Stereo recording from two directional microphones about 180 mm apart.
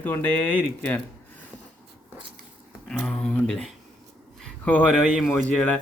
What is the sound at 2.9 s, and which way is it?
A man's voice, 5° left (ahead or behind).